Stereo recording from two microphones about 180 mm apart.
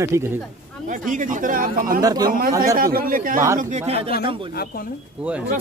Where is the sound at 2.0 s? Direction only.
20° right (ahead or behind).